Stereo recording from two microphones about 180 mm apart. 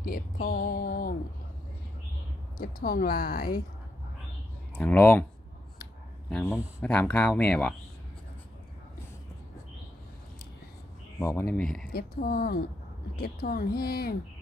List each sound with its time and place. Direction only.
0.0 s a sound: 55° left (ahead or behind)
2.5 s speech: 55° left (ahead or behind)
4.7 s speech: 10° left (ahead or behind)
6.8 s speech: 10° left (ahead or behind)
11.1 s speech: 15° left (ahead or behind)
11.9 s speech: 60° left (ahead or behind)